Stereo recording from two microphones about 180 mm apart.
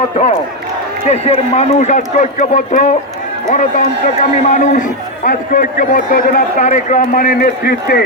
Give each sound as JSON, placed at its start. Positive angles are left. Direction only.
{"t": 1.0, "sound": "a man's voice", "side_deg": 35}